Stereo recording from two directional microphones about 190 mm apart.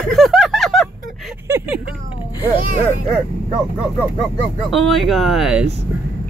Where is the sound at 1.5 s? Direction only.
15° right (ahead or behind).